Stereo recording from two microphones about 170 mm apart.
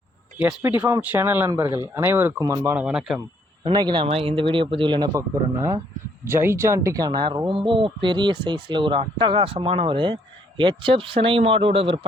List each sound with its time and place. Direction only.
0.3 s speech: 15° right (ahead or behind)
2.7 s speech: 5° right (ahead or behind)
3.6 s speech: 25° right (ahead or behind)